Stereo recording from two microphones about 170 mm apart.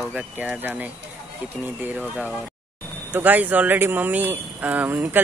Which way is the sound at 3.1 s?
10° right (ahead or behind).